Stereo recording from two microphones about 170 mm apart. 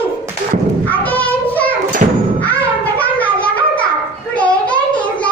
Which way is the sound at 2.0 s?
50° right (ahead or behind).